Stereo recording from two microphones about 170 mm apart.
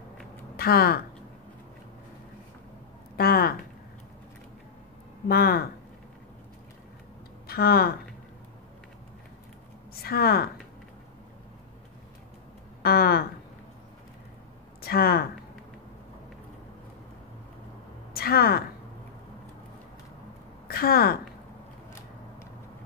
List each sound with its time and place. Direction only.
0.6 s speech: 65° left (ahead or behind)
3.2 s speech: 65° left (ahead or behind)
5.3 s speech: 65° left (ahead or behind)
7.4 s speech: 65° left (ahead or behind)
10.0 s speech: 65° left (ahead or behind)
12.8 s speech: 65° left (ahead or behind)
14.8 s speech: 65° left (ahead or behind)
18.1 s a woman's voice: 65° left (ahead or behind)
20.6 s a woman's voice: 60° left (ahead or behind)